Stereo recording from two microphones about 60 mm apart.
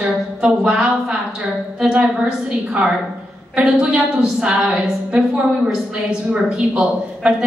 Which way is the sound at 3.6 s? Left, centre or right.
Centre.